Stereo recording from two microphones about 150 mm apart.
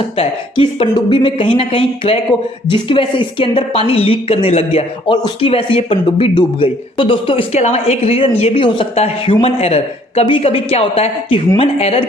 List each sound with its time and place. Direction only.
0.2 s a woman's voice: 35° left (ahead or behind)
7.5 s a woman's voice: 45° left (ahead or behind)